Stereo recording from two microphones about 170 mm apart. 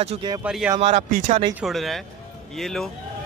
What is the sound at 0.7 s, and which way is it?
Speech, 40° right (ahead or behind).